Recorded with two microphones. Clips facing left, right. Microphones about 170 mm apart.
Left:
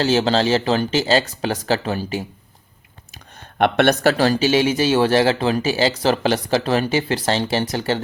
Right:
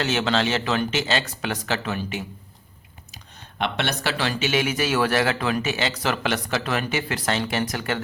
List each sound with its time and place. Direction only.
0.0 s speech: 35° left (ahead or behind)
3.6 s speech: 50° left (ahead or behind); by 8.0 s 30° left (ahead or behind)